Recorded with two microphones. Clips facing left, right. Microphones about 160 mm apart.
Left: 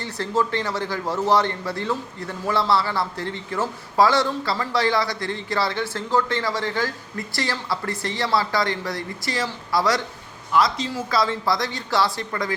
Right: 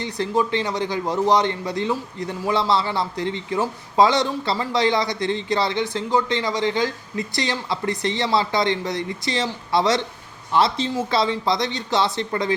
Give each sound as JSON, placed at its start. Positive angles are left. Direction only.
{"t": 0.0, "sound": "a man's voice", "side_deg": -15}